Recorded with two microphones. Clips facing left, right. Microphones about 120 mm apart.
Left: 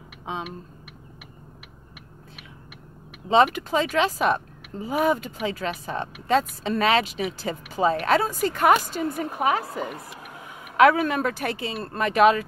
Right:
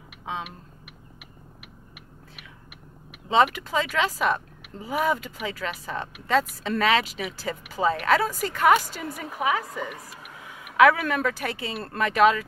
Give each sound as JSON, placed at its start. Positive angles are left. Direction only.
{"t": 3.3, "sound": "speech", "side_deg": 30}
{"t": 8.6, "sound": "a woman's voice", "side_deg": 35}